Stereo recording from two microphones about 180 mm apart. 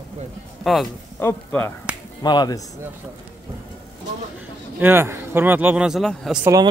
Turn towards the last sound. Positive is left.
turn(degrees=-20)  # may be behind; listen again after turning